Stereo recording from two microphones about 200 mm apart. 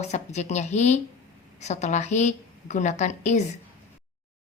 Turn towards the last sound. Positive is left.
turn(degrees=35)  # may be behind; listen again after turning